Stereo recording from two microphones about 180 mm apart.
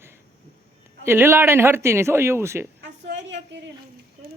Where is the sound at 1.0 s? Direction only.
15° right (ahead or behind).